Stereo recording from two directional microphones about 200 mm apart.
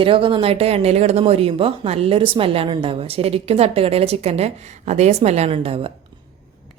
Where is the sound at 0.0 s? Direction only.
25° right (ahead or behind).